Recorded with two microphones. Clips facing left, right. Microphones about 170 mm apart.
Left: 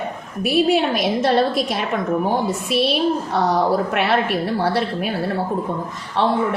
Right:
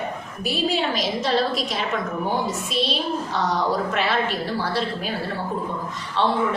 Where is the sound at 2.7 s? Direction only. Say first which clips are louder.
Left 8 dB; 65° left (ahead or behind).